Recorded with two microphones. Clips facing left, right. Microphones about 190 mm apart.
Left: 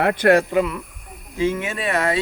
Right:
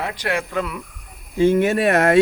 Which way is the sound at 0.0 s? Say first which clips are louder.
Left 9 dB; 55° left (ahead or behind).